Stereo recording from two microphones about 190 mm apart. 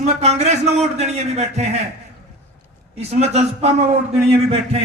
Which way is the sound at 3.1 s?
35° right (ahead or behind).